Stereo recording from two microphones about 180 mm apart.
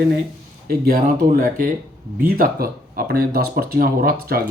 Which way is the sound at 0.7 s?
55° right (ahead or behind).